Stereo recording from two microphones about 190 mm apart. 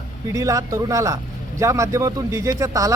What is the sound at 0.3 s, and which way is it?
A man's voice, 15° right (ahead or behind).